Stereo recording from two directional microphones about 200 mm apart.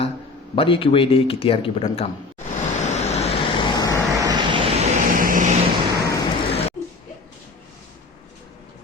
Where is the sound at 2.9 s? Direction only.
35° left (ahead or behind).